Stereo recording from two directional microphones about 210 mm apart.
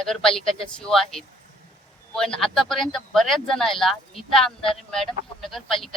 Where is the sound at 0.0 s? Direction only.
Centre (ahead or behind).